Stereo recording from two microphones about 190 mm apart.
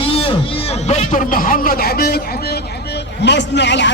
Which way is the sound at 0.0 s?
30° left (ahead or behind).